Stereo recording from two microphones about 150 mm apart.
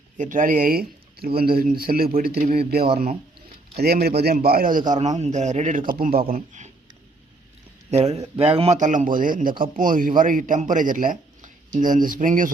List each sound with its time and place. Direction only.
0.2 s speech: 60° right (ahead or behind)
4.9 s a man's voice: 50° right (ahead or behind); by 6.2 s 75° right (ahead or behind)
6.3 s a man's voice: 55° right (ahead or behind)
7.9 s a man's voice: 45° right (ahead or behind); by 12.5 s 65° right (ahead or behind)